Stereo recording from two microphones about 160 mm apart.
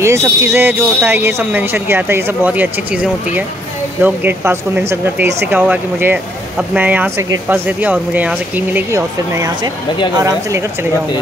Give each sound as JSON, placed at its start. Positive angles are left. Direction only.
{"t": 0.0, "sound": "speech", "side_deg": -15}